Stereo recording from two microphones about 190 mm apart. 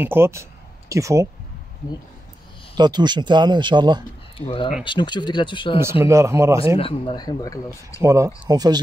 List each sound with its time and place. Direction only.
0.0 s speech: 10° right (ahead or behind)
2.7 s speech: 20° right (ahead or behind)
4.4 s speech: 25° left (ahead or behind)
6.0 s a man's voice: 15° right (ahead or behind)
6.8 s speech: 30° left (ahead or behind)
8.0 s a man's voice: 15° right (ahead or behind)